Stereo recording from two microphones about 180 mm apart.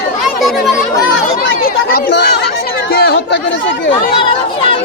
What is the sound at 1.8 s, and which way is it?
Speech, 55° left (ahead or behind).